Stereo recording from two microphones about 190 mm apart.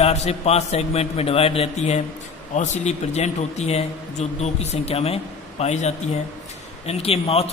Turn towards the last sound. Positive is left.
turn(degrees=30)  # may be behind; listen again after turning